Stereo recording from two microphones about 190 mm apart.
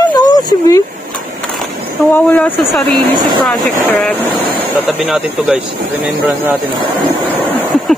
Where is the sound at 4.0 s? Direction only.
10° left (ahead or behind).